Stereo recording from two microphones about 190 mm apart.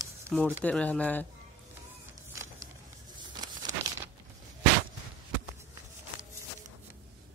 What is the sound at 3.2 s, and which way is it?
Crumpling, 20° right (ahead or behind).